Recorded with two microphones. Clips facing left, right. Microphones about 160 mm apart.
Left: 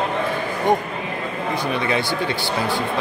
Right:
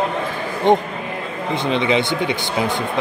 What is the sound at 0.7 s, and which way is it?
Speech, 25° right (ahead or behind).